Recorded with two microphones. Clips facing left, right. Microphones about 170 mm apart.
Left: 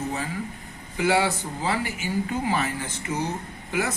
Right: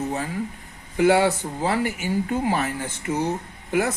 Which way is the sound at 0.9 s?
50° right (ahead or behind).